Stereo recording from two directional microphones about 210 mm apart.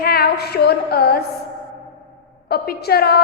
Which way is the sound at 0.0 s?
45° left (ahead or behind).